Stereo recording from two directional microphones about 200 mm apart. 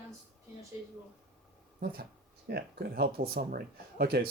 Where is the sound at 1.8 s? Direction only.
50° right (ahead or behind).